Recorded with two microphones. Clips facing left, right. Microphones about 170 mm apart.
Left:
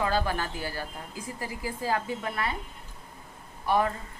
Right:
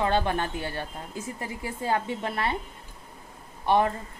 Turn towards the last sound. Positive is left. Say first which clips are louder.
# right 3 dB
turn(degrees=-25)  # may be behind; listen again after turning